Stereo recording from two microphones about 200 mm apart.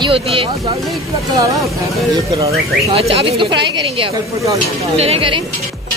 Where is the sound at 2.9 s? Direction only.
25° right (ahead or behind).